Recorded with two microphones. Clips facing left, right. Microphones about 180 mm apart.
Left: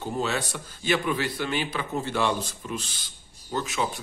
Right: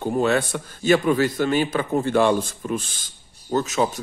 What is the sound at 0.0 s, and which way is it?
A man's voice, 55° right (ahead or behind).